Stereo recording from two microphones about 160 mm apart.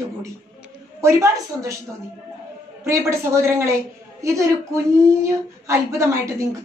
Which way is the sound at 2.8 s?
15° right (ahead or behind).